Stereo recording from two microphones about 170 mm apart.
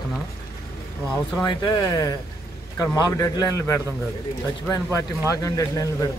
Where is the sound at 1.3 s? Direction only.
20° left (ahead or behind).